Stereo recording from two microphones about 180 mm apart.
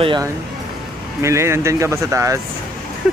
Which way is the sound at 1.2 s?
15° right (ahead or behind).